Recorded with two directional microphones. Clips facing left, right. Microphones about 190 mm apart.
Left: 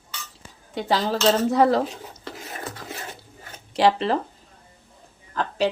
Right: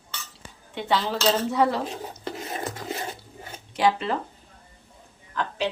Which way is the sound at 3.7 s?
35° left (ahead or behind).